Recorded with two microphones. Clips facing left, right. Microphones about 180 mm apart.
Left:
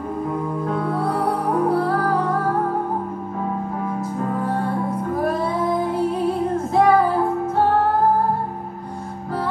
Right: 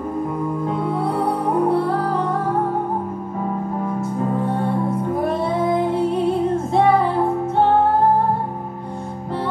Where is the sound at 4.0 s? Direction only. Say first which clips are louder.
Right 3 dB; 25° right (ahead or behind).